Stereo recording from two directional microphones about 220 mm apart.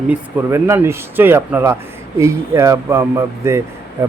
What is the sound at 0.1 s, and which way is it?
Speech, 10° right (ahead or behind).